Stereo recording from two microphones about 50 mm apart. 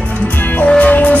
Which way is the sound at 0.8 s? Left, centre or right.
Left.